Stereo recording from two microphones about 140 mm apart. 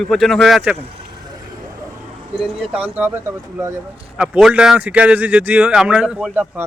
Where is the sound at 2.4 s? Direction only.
10° right (ahead or behind).